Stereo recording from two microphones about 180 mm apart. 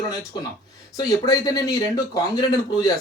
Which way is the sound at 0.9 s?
20° left (ahead or behind).